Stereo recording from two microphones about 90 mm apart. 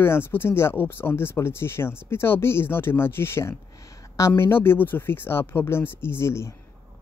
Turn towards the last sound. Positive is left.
turn(degrees=30)  # may be behind; listen again after turning